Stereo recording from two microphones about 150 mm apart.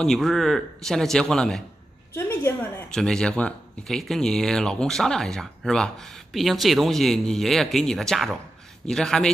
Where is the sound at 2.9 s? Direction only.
5° left (ahead or behind).